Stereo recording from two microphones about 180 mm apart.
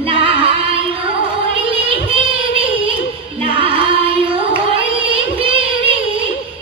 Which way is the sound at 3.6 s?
30° right (ahead or behind).